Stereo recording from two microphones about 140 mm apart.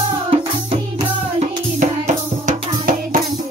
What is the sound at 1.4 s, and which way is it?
Music, 60° right (ahead or behind).